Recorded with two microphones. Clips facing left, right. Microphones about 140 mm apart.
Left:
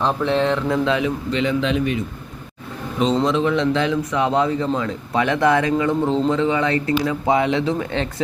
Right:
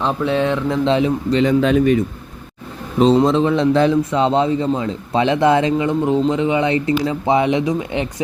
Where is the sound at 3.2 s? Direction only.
35° right (ahead or behind).